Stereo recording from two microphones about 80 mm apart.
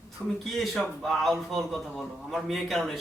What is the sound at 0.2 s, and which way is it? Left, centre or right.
A man's voice, centre.